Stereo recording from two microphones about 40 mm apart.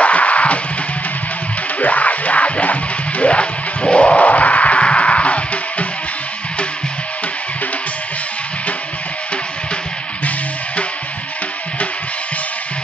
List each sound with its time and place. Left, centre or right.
0.0 s music: left
1.8 s music: left